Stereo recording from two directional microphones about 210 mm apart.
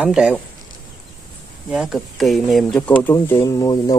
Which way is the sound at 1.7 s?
Centre (ahead or behind).